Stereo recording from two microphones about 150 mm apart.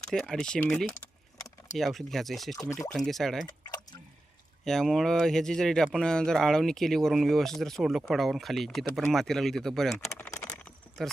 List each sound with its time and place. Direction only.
0.1 s speech: 5° left (ahead or behind)
3.4 s a sound: 25° left (ahead or behind)
4.6 s speech: centre (ahead or behind)
10.1 s typing: 15° left (ahead or behind)